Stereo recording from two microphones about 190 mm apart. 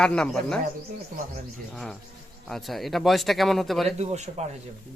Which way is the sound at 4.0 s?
35° right (ahead or behind).